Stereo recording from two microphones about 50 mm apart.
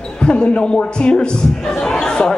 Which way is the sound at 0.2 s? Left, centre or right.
Centre.